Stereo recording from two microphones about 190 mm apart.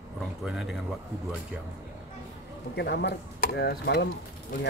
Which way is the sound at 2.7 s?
60° left (ahead or behind).